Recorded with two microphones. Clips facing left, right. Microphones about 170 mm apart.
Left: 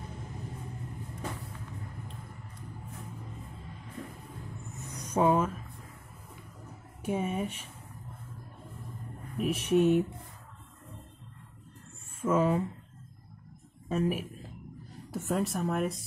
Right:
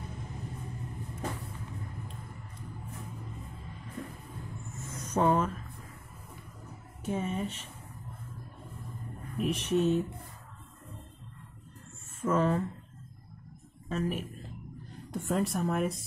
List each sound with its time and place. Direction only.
4.7 s a sound: 15° left (ahead or behind)
7.0 s speech: 10° left (ahead or behind)
9.4 s speech: 5° left (ahead or behind)
12.2 s speech: 10° left (ahead or behind)
13.8 s a man's voice: 10° left (ahead or behind)